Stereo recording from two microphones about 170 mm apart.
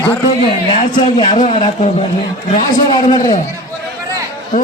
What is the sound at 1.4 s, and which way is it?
Speech, 40° left (ahead or behind).